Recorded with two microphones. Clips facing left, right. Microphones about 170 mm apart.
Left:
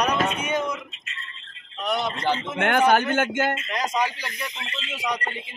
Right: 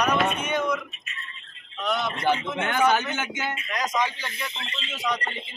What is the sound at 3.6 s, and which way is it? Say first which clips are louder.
Speech: left 1 dB; 30° left (ahead or behind).